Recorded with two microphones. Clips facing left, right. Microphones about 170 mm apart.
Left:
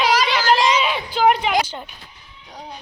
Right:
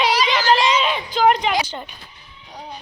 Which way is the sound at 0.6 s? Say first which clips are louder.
Even; 5° left (ahead or behind).